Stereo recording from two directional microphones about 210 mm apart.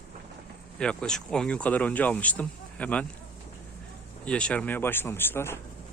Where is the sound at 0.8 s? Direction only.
5° left (ahead or behind).